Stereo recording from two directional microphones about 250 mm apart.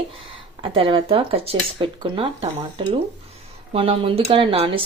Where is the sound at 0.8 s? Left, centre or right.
Right.